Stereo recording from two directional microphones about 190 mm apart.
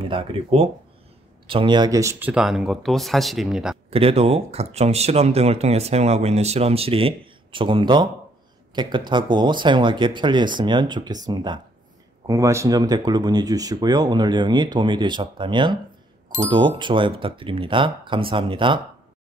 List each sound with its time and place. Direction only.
0.0 s speech: 30° right (ahead or behind); by 3.7 s 5° right (ahead or behind)
3.9 s speech: 30° right (ahead or behind)